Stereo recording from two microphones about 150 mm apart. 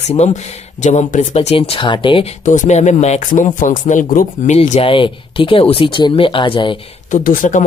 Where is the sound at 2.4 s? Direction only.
50° left (ahead or behind); by 6.7 s 35° left (ahead or behind).